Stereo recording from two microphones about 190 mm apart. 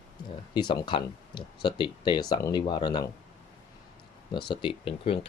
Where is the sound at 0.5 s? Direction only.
25° left (ahead or behind).